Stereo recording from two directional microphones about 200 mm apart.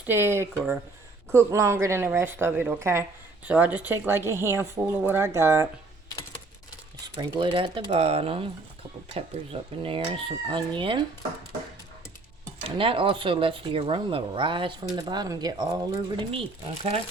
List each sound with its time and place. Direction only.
0.0 s speech: 10° right (ahead or behind)
7.0 s speech: 20° right (ahead or behind)
12.6 s speech: 25° right (ahead or behind)